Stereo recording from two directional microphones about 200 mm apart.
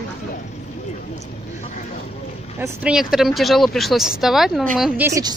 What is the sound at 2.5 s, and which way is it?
Speech, 10° right (ahead or behind).